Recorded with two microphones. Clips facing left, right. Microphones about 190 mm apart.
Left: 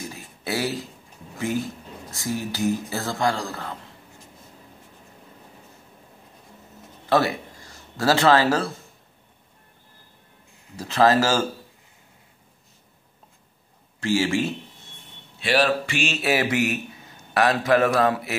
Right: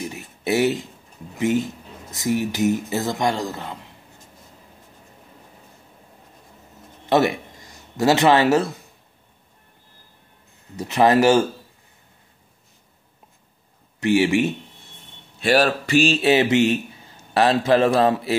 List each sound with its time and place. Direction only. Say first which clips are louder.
0.0 s a sound: right 6 dB; 20° right (ahead or behind)
1.4 s speech: right 5 dB; 20° right (ahead or behind)
7.1 s a man's voice: right 3 dB; 20° right (ahead or behind)
10.8 s speech: right 3 dB; 20° right (ahead or behind)
13.9 s a man's voice: right 5 dB; 20° right (ahead or behind)
15.3 s a man's voice: right 3 dB; 45° right (ahead or behind); by 18.3 s 30° right (ahead or behind)